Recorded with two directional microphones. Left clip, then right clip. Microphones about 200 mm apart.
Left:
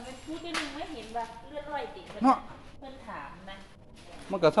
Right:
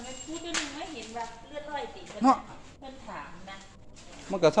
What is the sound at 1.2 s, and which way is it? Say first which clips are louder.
Speech: left 2 dB; 15° right (ahead or behind).